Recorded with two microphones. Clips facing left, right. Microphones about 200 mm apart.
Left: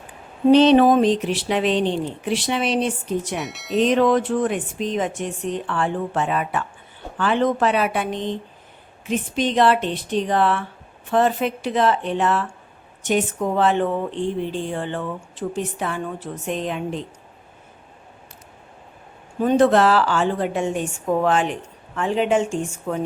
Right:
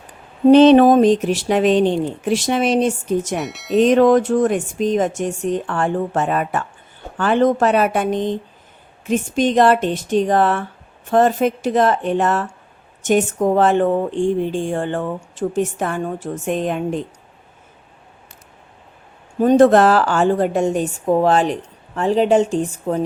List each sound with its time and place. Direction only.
0.5 s speech: 50° right (ahead or behind)
3.3 s speech: centre (ahead or behind)
3.8 s speech: 45° right (ahead or behind)
19.4 s a woman's voice: 45° right (ahead or behind)